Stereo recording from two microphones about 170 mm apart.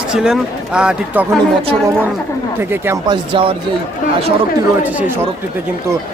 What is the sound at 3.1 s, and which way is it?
Speech, 30° right (ahead or behind).